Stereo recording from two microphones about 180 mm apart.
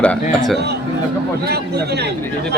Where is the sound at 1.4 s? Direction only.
65° right (ahead or behind).